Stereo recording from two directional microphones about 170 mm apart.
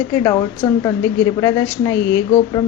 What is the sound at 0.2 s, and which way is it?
A woman's voice, 15° left (ahead or behind).